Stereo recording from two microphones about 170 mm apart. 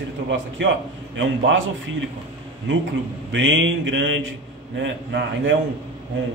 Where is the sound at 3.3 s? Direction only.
90° right.